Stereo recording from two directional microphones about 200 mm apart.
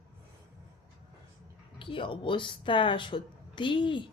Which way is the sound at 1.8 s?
25° left (ahead or behind).